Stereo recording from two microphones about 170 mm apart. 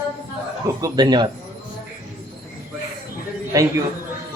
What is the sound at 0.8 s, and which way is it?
Speech, 20° right (ahead or behind).